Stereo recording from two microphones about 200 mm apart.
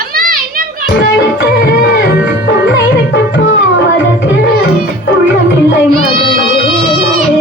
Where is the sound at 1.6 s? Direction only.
65° left (ahead or behind).